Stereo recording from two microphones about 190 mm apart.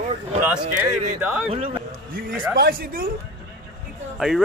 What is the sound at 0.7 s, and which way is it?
Speech, 5° right (ahead or behind).